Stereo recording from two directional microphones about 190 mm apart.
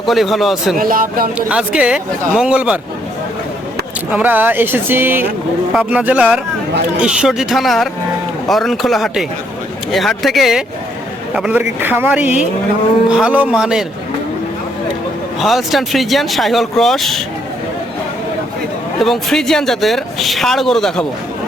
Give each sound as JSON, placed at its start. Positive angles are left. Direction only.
{"t": 0.1, "sound": "a woman's voice", "side_deg": 0}
{"t": 0.8, "sound": "speech", "side_deg": -45}
{"t": 1.4, "sound": "a woman's voice", "side_deg": -5}
{"t": 4.1, "sound": "a woman's voice", "side_deg": -10}
{"t": 15.4, "sound": "a woman's voice", "side_deg": 0}
{"t": 18.9, "sound": "a woman's voice", "side_deg": 0}